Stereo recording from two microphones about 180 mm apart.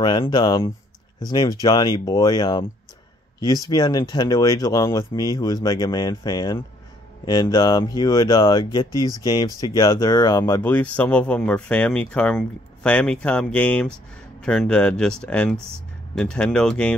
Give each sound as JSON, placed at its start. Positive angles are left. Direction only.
{"t": 0.0, "sound": "speech", "side_deg": 25}